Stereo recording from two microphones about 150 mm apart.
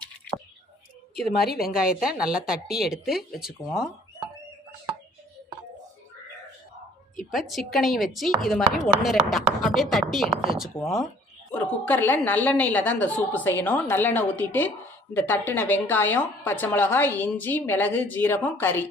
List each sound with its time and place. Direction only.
1.4 s a woman's voice: 90° left
1.6 s speech: 5° right (ahead or behind)
7.3 s speech: centre (ahead or behind)
11.5 s a woman's voice: 15° left (ahead or behind)